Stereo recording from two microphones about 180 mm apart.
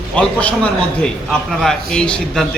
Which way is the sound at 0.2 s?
5° left (ahead or behind).